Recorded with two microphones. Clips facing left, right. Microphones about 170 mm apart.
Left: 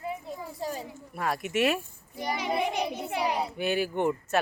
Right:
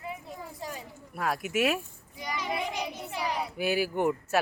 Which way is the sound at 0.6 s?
30° left (ahead or behind).